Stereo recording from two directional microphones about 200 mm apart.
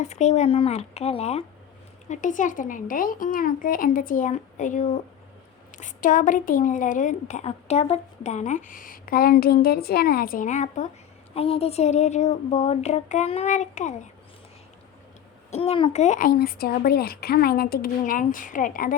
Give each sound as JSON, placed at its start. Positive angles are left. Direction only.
{"t": 0.0, "sound": "a woman's voice", "side_deg": 35}
{"t": 15.4, "sound": "speech", "side_deg": 30}